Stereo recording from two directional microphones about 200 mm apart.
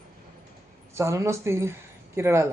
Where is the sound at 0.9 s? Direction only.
15° right (ahead or behind).